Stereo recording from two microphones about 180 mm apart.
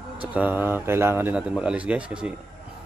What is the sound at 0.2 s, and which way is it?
A man's voice, 10° right (ahead or behind).